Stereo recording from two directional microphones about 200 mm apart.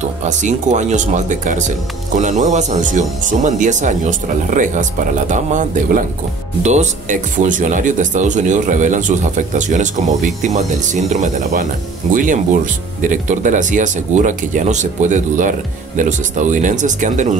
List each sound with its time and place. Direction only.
0.0 s speech: 40° right (ahead or behind)